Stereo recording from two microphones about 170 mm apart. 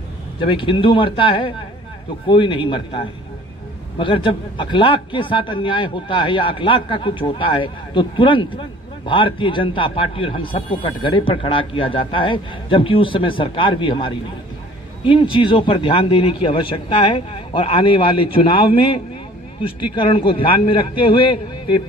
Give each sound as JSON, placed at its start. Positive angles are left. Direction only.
{"t": 0.4, "sound": "a man's voice", "side_deg": 30}